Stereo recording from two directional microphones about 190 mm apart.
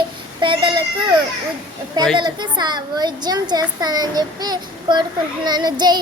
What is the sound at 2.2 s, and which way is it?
A child's voice, 25° right (ahead or behind).